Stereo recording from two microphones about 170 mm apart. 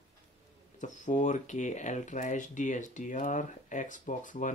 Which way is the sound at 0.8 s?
45° left (ahead or behind).